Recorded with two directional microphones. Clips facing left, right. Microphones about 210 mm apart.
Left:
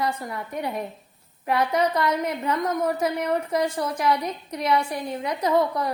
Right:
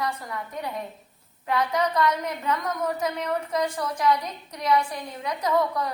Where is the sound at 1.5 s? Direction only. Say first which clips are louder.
Left 3 dB; 25° left (ahead or behind).